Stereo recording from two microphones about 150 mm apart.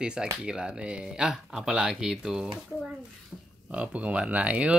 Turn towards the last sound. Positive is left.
turn(degrees=-10)  # may be behind; listen again after turning